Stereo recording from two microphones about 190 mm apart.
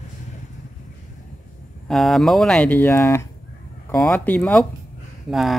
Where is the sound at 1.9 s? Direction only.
Centre (ahead or behind).